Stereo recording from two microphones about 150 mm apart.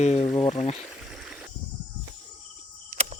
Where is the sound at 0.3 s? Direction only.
40° left (ahead or behind).